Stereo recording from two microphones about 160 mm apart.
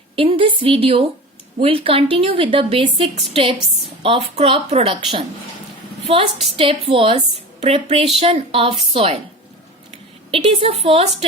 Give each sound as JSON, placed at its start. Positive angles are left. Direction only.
{"t": 0.2, "sound": "a woman's voice", "side_deg": -35}
{"t": 6.1, "sound": "a woman's voice", "side_deg": -35}
{"t": 10.3, "sound": "a woman's voice", "side_deg": -35}